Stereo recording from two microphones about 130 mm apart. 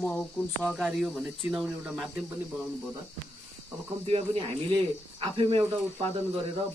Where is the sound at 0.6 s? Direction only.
Centre (ahead or behind).